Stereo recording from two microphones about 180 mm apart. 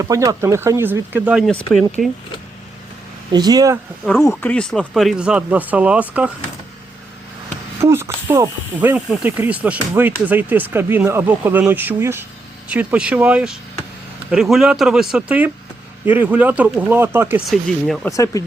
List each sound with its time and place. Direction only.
0.0 s speech: 20° right (ahead or behind)
1.5 s speech: 5° left (ahead or behind)
3.3 s speech: 20° right (ahead or behind)
4.3 s speech: 5° left (ahead or behind)
7.8 s speech: 15° right (ahead or behind)
17.5 s speech: centre (ahead or behind)
18.1 s speech: 20° left (ahead or behind)